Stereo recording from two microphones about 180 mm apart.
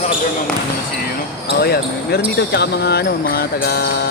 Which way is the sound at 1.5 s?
60° left (ahead or behind).